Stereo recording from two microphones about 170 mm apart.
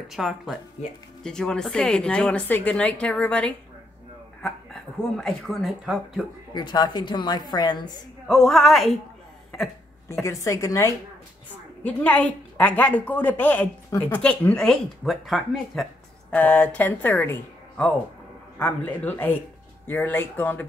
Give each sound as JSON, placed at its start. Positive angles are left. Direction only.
{"t": 0.1, "sound": "speech", "side_deg": 0}
{"t": 5.1, "sound": "speech", "side_deg": 0}
{"t": 6.5, "sound": "a woman's voice", "side_deg": 25}
{"t": 8.3, "sound": "speech", "side_deg": 0}
{"t": 10.2, "sound": "speech", "side_deg": 15}